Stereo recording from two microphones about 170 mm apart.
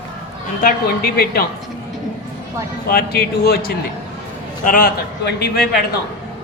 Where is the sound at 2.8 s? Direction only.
65° left (ahead or behind).